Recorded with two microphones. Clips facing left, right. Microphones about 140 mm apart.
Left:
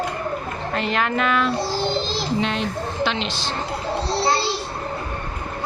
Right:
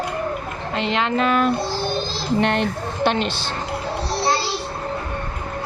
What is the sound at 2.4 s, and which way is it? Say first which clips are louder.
Speech: right 3 dB; 60° right (ahead or behind).